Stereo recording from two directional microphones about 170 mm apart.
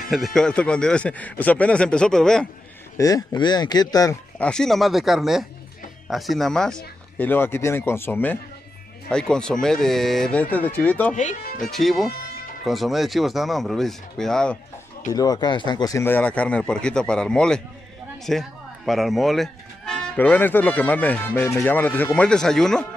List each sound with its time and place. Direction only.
0.1 s speech: centre (ahead or behind)
3.0 s speech: 20° left (ahead or behind)
4.4 s speech: 5° left (ahead or behind)
15.0 s speech: 20° left (ahead or behind); by 22.8 s 5° left (ahead or behind)